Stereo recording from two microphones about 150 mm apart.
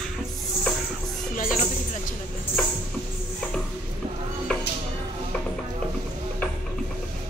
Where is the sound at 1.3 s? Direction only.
65° left (ahead or behind).